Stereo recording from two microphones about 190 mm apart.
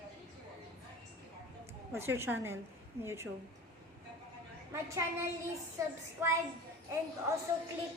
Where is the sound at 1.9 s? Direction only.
15° right (ahead or behind).